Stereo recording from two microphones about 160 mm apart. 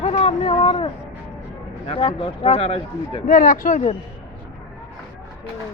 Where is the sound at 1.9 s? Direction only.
35° left (ahead or behind).